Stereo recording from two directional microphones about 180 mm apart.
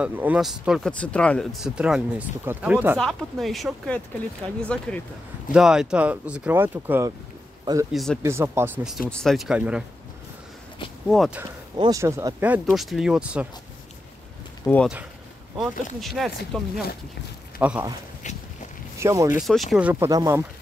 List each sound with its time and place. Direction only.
0.0 s speech: 10° right (ahead or behind)
3.0 s speech: centre (ahead or behind)
7.9 s speech: centre (ahead or behind)
8.2 s speech: 15° right (ahead or behind)
9.0 s speech: 5° left (ahead or behind)
11.1 s speech: 5° right (ahead or behind)
11.7 s speech: 20° right (ahead or behind); by 13.5 s 5° right (ahead or behind)
14.7 s speech: 5° left (ahead or behind)
16.0 s speech: centre (ahead or behind)
17.6 s speech: 10° right (ahead or behind)
18.9 s speech: 20° right (ahead or behind)
19.3 s speech: centre (ahead or behind); by 20.4 s 15° right (ahead or behind)